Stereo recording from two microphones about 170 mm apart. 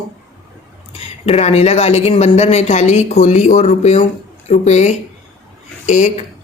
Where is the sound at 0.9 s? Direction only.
35° left (ahead or behind).